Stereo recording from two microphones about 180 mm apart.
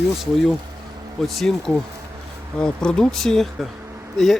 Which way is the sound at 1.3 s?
Centre (ahead or behind).